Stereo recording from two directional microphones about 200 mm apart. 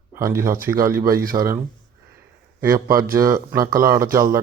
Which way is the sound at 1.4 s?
15° right (ahead or behind).